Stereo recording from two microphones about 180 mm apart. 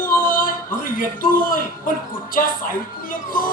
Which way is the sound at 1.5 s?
50° left (ahead or behind).